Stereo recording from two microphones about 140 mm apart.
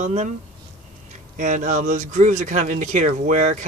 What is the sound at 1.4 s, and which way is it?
Speech, 65° right (ahead or behind).